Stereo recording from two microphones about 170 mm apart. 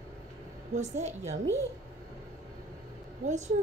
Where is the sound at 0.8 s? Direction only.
40° right (ahead or behind).